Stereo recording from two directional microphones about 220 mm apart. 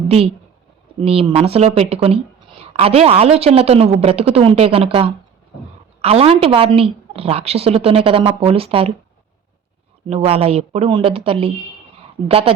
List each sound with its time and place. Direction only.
1.0 s speech: 25° right (ahead or behind)
10.1 s speech: 25° right (ahead or behind)